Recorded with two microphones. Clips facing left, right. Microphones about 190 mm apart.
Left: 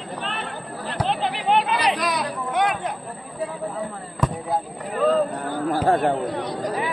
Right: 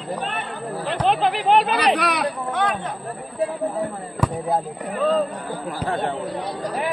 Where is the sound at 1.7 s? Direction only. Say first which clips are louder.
Right 2 dB; 65° right (ahead or behind).